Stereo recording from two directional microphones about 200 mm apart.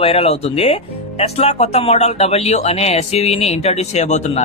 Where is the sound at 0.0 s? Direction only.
30° left (ahead or behind).